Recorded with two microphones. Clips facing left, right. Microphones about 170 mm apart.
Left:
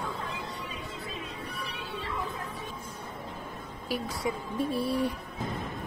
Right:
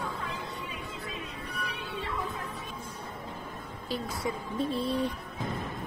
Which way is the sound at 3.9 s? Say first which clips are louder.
Left 1 dB; 10° left (ahead or behind).